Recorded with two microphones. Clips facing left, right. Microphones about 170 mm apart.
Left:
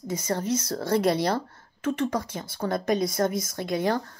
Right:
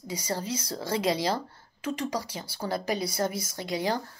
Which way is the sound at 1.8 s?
55° left (ahead or behind).